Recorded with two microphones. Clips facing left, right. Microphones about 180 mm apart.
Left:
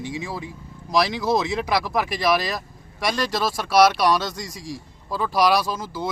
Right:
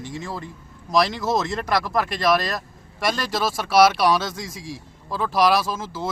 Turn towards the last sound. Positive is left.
turn(degrees=-5)  # may be behind; listen again after turning